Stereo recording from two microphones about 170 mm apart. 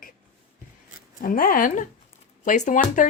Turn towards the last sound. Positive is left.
turn(degrees=50)  # may be behind; listen again after turning